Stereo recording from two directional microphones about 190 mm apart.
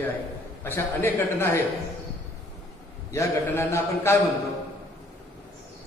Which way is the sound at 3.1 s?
15° left (ahead or behind).